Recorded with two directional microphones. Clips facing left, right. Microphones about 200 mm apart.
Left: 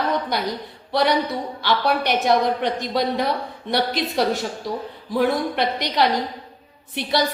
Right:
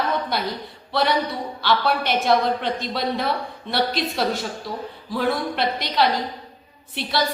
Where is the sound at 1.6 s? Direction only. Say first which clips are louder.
Even; 20° left (ahead or behind).